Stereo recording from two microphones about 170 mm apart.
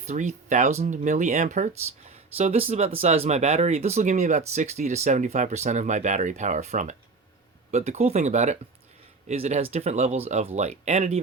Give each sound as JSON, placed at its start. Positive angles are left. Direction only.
{"t": 0.0, "sound": "speech", "side_deg": -45}